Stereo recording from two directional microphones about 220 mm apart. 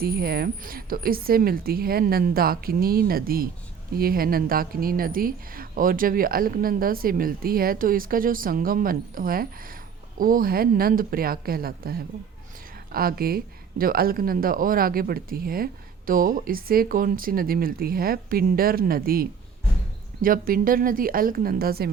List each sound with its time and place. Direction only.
0.0 s a woman's voice: 45° right (ahead or behind)